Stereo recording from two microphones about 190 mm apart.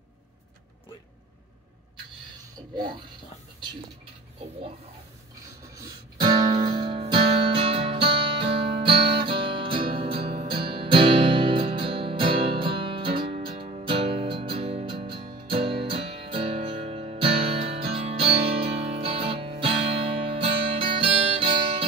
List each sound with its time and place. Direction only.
2.7 s speech: 25° right (ahead or behind)
5.8 s music: 25° right (ahead or behind)